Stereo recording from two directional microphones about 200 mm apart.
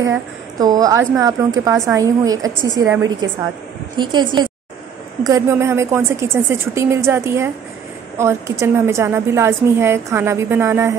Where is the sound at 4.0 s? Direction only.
25° right (ahead or behind).